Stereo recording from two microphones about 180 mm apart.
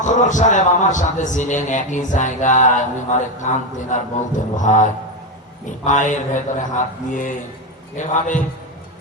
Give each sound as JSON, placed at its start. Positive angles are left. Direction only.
{"t": 0.0, "sound": "a man's voice", "side_deg": 45}